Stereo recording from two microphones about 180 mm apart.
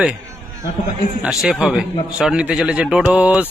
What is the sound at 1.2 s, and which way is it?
A man's voice, 5° right (ahead or behind).